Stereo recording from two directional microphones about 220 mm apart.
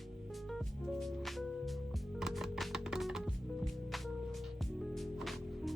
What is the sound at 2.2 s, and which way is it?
Music, centre (ahead or behind).